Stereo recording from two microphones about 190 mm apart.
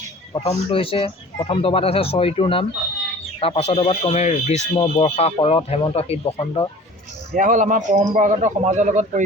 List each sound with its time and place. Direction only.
0.3 s speech: 30° left (ahead or behind)
7.3 s a man's voice: 45° right (ahead or behind)